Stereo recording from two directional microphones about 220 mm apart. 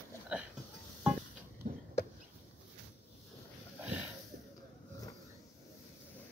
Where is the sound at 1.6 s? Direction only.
35° right (ahead or behind).